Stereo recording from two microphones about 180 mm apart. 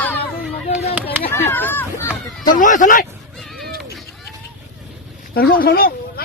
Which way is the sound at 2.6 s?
45° left (ahead or behind).